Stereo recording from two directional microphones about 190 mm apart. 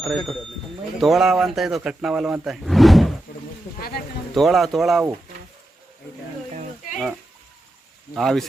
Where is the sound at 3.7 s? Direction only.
55° left (ahead or behind).